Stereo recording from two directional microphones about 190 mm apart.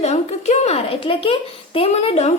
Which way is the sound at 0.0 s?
35° left (ahead or behind).